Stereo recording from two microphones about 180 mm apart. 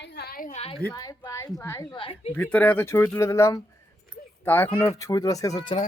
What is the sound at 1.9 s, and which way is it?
Speech, 30° left (ahead or behind).